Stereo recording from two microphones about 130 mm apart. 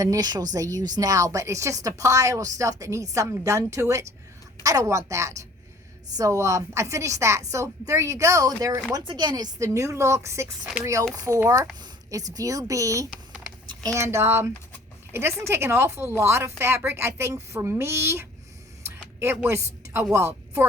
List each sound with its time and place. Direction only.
0.0 s a woman's voice: 30° right (ahead or behind)
18.9 s a sound: 20° right (ahead or behind)
20.1 s speech: 20° right (ahead or behind)